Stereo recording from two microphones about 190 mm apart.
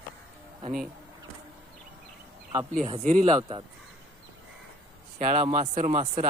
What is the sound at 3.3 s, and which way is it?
Speech, 25° right (ahead or behind).